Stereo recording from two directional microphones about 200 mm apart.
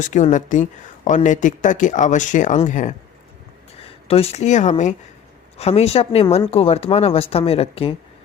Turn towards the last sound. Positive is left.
turn(degrees=30)  # may be behind; listen again after turning